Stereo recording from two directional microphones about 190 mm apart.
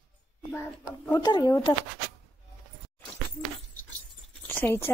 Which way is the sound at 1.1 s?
20° left (ahead or behind).